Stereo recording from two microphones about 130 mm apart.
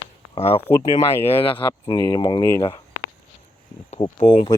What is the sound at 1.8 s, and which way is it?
Speech, 30° left (ahead or behind).